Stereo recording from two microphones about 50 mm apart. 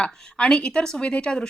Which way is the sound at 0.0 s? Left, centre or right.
Left.